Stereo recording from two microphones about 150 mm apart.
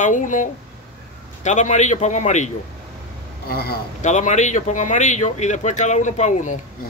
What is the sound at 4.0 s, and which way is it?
Speech, 55° left (ahead or behind).